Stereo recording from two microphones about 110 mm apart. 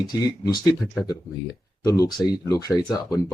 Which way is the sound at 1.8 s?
30° left (ahead or behind).